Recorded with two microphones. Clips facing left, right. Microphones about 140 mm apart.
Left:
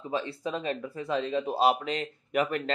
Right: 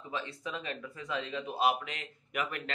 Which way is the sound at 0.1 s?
35° left (ahead or behind).